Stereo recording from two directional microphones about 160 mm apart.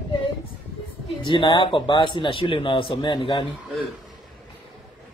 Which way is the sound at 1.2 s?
30° left (ahead or behind).